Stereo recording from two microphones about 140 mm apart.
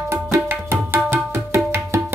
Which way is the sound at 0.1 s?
20° right (ahead or behind).